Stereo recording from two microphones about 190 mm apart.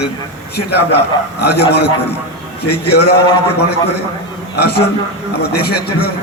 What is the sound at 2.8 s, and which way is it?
Speech, 60° left (ahead or behind).